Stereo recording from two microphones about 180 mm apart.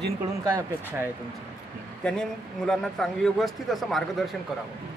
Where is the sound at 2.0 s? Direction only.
5° left (ahead or behind).